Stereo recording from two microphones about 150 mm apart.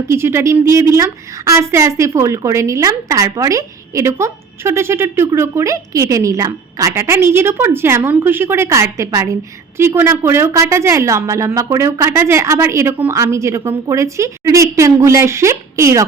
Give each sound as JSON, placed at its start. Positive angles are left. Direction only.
{"t": 0.1, "sound": "a woman's voice", "side_deg": -15}